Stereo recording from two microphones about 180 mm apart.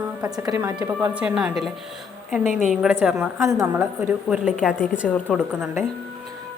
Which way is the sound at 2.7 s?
5° right (ahead or behind).